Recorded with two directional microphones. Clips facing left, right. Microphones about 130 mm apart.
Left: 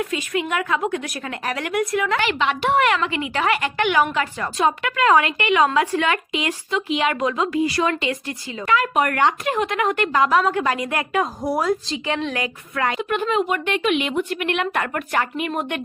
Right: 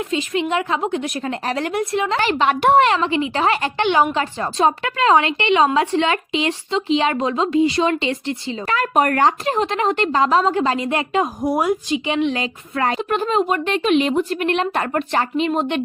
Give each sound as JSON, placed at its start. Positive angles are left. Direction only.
{"t": 0.1, "sound": "a woman's voice", "side_deg": -25}
{"t": 2.7, "sound": "a woman's voice", "side_deg": -30}
{"t": 8.6, "sound": "a woman's voice", "side_deg": -40}